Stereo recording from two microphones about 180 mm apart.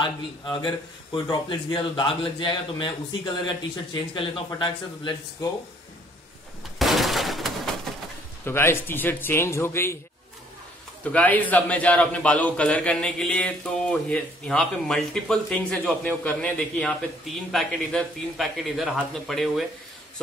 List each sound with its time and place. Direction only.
0.0 s a man's voice: 25° left (ahead or behind)
6.8 s a sound: centre (ahead or behind)
8.5 s a man's voice: 15° left (ahead or behind)
11.1 s a man's voice: 10° left (ahead or behind)